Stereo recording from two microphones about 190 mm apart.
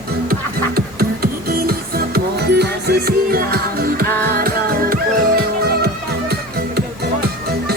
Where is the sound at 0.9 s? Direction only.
50° right (ahead or behind).